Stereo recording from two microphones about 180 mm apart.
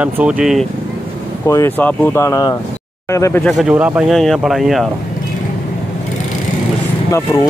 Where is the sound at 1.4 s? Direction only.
15° left (ahead or behind); by 4.9 s centre (ahead or behind).